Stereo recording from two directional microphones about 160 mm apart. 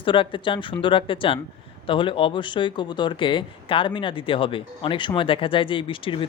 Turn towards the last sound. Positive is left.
turn(degrees=30)  # may be behind; listen again after turning